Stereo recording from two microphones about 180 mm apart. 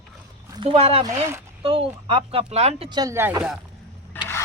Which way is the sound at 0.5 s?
30° right (ahead or behind).